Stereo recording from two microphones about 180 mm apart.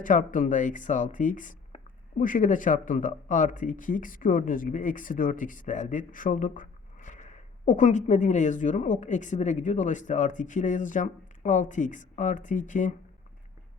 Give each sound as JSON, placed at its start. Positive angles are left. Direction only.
{"t": 0.0, "sound": "speech", "side_deg": 45}